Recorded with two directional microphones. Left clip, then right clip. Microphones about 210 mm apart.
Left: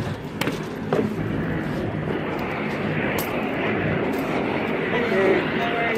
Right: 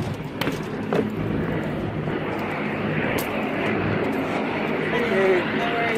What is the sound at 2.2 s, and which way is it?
Vehicle, 45° right (ahead or behind).